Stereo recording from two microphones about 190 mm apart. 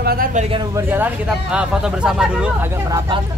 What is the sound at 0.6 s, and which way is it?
Speech, 15° right (ahead or behind).